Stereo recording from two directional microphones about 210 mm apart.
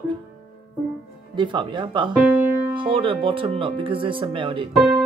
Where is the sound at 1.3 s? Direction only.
20° right (ahead or behind).